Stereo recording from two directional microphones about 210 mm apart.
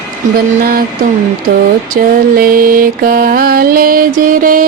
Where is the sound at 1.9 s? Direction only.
45° right (ahead or behind).